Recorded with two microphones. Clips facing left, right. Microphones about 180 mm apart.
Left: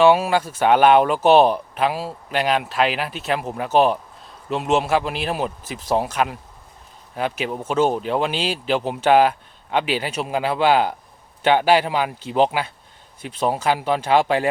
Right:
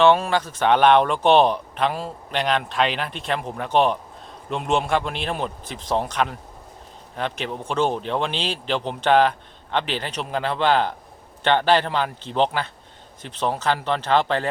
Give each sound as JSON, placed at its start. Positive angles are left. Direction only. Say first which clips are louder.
{"t": 0.0, "sound": "speech", "louder": "left 2 dB", "side_deg": 10}